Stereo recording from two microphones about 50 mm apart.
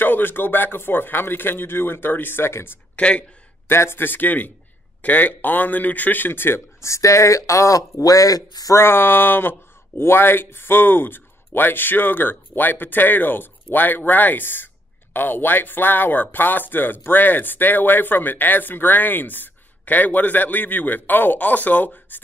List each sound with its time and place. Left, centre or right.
0.0 s speech: left
3.0 s a man's voice: left
3.6 s speech: left
6.8 s speech: left
8.7 s speech: left